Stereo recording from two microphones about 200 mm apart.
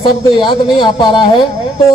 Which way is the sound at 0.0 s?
25° left (ahead or behind).